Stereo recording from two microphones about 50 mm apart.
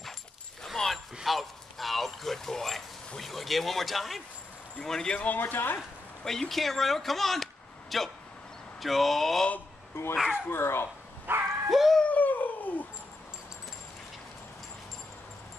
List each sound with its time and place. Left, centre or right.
0.8 s a sound: centre
1.2 s a sound: centre
3.2 s speech: centre
4.7 s speech: centre
5.1 s speech: left
5.4 s speech: left
6.5 s speech: centre
9.9 s speech: left
11.2 s bow-wow: right
11.7 s a sound: centre
12.1 s dog: left